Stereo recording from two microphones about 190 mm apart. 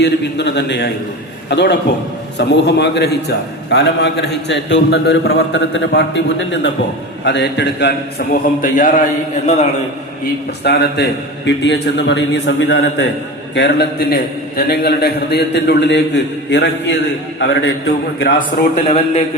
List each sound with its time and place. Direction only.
0.0 s a man's voice: 65° left (ahead or behind); by 9.0 s 45° left (ahead or behind)
10.6 s a man's voice: 60° left (ahead or behind)
18.8 s a man's voice: 35° left (ahead or behind)